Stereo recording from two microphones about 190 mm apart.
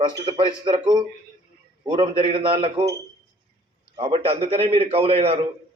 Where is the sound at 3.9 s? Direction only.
30° right (ahead or behind).